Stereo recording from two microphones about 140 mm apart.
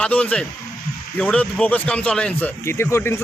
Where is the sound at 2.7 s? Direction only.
15° left (ahead or behind).